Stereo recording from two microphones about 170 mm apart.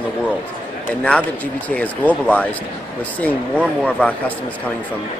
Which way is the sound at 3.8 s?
5° left (ahead or behind).